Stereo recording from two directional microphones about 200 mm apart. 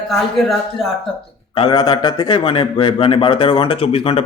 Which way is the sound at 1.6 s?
25° left (ahead or behind).